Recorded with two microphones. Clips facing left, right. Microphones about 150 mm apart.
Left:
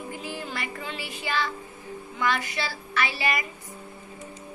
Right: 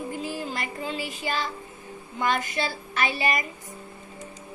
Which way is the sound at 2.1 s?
45° right (ahead or behind).